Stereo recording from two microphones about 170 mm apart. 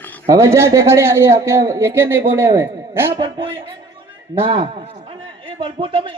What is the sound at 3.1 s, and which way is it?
A man's voice, 30° right (ahead or behind).